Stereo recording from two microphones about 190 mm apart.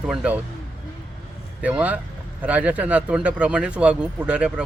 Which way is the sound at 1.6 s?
5° right (ahead or behind).